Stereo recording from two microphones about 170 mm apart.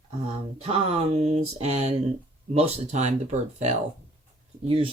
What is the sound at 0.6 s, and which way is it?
Speech, 35° right (ahead or behind).